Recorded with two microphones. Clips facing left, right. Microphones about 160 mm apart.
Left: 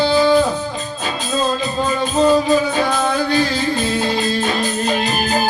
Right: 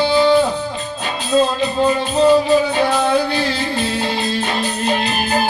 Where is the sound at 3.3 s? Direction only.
40° left (ahead or behind).